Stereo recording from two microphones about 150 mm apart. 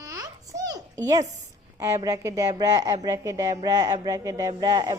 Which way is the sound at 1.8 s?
20° right (ahead or behind).